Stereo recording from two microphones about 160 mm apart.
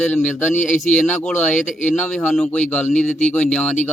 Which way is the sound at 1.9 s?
10° left (ahead or behind).